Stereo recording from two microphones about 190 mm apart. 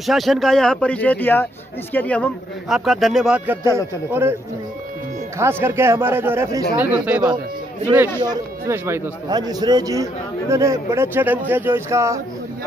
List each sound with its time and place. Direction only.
0.0 s speech: centre (ahead or behind)
5.4 s speech: 10° right (ahead or behind)